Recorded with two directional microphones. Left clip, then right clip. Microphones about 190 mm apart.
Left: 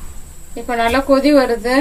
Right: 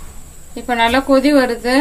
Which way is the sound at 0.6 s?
30° right (ahead or behind).